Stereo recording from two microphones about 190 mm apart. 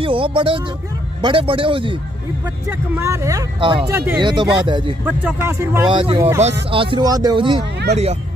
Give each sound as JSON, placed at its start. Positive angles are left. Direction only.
{"t": 0.0, "sound": "music", "side_deg": -25}
{"t": 1.2, "sound": "speech", "side_deg": -25}
{"t": 3.0, "sound": "speech", "side_deg": -15}
{"t": 3.9, "sound": "speech", "side_deg": -10}
{"t": 4.2, "sound": "speech", "side_deg": -25}
{"t": 5.0, "sound": "speech", "side_deg": -10}
{"t": 5.9, "sound": "speech", "side_deg": -25}